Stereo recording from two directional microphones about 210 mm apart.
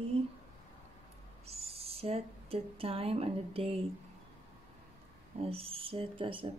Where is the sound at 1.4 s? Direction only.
30° right (ahead or behind).